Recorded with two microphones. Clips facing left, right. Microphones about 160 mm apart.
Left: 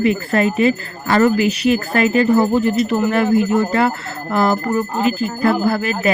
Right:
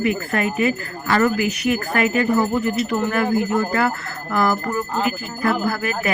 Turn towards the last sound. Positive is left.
turn(degrees=25)  # may be behind; listen again after turning